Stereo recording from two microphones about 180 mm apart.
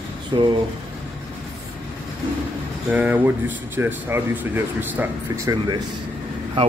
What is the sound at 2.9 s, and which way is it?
Speech, 10° right (ahead or behind).